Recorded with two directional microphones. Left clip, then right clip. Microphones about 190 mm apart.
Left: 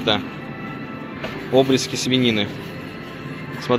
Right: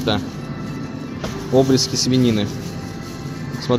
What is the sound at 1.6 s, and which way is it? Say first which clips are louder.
Speech: right 4 dB; 15° left (ahead or behind).